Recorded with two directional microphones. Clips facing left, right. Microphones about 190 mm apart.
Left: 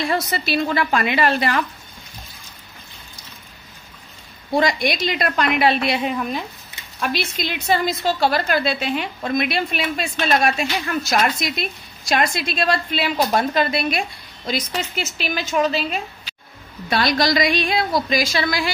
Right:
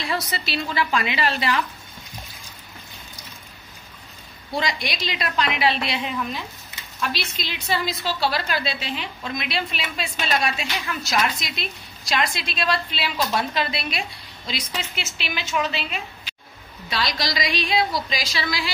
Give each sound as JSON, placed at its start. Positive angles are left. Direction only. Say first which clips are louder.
{"t": 0.0, "sound": "a woman's voice", "louder": "left 5 dB", "side_deg": 50}
{"t": 4.5, "sound": "a woman's voice", "louder": "left 8 dB", "side_deg": 50}
{"t": 16.9, "sound": "a woman's voice", "louder": "left 8 dB", "side_deg": 55}